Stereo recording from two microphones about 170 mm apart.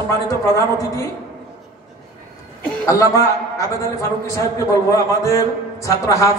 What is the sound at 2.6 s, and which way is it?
A man's voice, 15° left (ahead or behind).